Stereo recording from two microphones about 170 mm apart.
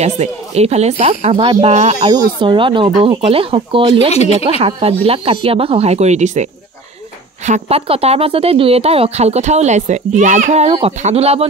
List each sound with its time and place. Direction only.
0.0 s speech: 40° right (ahead or behind)
2.0 s speech: 25° right (ahead or behind)
4.1 s speech: 40° left (ahead or behind)
4.6 s speech: 35° right (ahead or behind)
7.4 s speech: 40° right (ahead or behind)